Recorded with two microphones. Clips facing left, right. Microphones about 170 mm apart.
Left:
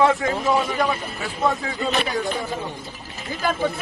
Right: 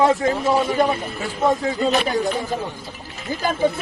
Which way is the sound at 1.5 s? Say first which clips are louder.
Right 6 dB; 35° right (ahead or behind).